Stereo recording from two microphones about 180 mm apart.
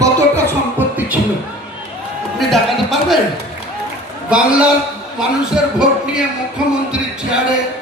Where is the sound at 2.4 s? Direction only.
Centre (ahead or behind).